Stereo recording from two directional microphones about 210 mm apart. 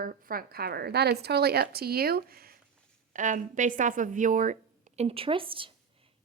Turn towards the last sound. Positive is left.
turn(degrees=-25)  # may be behind; listen again after turning